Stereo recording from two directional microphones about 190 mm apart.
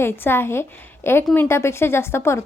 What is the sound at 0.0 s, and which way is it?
A woman's voice, 10° left (ahead or behind).